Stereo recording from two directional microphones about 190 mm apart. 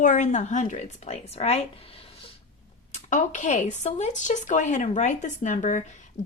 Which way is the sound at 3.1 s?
40° left (ahead or behind).